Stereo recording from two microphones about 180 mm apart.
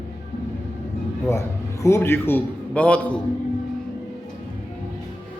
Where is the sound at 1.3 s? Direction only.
15° left (ahead or behind).